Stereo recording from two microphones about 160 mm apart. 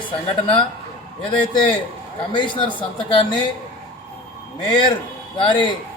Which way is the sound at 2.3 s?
30° left (ahead or behind).